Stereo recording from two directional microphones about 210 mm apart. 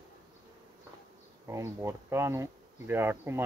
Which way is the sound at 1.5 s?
15° right (ahead or behind).